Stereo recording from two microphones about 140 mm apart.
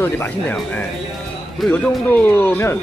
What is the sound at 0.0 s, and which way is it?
Speech, 15° left (ahead or behind).